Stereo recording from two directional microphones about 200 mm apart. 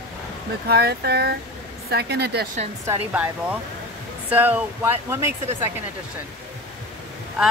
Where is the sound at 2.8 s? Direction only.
5° right (ahead or behind).